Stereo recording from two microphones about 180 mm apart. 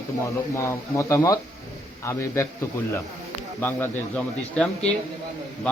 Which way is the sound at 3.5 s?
10° left (ahead or behind).